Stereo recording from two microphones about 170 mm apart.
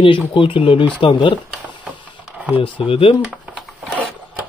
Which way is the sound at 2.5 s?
30° left (ahead or behind).